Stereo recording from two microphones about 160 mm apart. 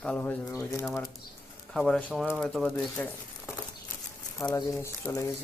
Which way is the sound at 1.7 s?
5° left (ahead or behind).